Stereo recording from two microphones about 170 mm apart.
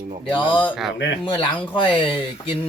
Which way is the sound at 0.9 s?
90° left.